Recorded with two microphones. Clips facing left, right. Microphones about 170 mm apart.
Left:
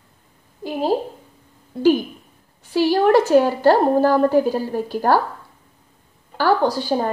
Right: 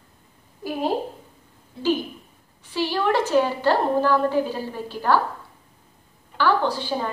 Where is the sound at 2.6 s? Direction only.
45° left (ahead or behind).